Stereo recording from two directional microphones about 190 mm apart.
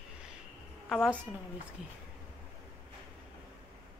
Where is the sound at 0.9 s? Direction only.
5° left (ahead or behind).